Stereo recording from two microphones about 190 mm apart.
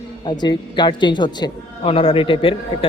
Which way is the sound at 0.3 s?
25° left (ahead or behind).